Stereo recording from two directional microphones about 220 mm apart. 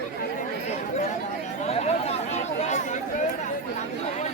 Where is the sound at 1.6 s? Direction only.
30° left (ahead or behind).